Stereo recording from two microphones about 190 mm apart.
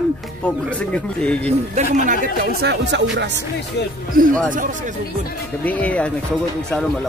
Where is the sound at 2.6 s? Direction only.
65° right (ahead or behind).